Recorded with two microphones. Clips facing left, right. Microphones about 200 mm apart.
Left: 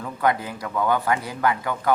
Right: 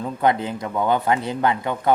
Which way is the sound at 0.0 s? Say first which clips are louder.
Right 3 dB; 25° right (ahead or behind).